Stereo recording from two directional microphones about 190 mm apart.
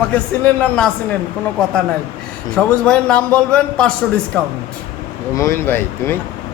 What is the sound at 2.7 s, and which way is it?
A man's voice, 5° left (ahead or behind).